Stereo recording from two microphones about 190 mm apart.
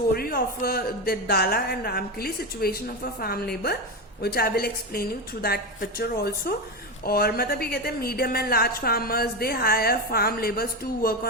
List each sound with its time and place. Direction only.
0.1 s a woman's voice: 55° left (ahead or behind)